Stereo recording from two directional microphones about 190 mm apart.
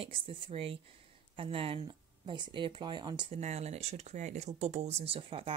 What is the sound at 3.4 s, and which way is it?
Speech, 35° right (ahead or behind).